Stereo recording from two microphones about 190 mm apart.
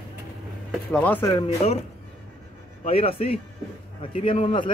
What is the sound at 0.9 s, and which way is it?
Speech, 10° left (ahead or behind).